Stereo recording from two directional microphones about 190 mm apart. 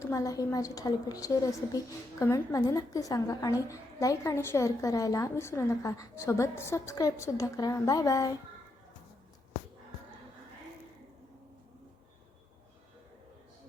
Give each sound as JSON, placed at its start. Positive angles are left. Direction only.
{"t": 0.0, "sound": "a woman's voice", "side_deg": 15}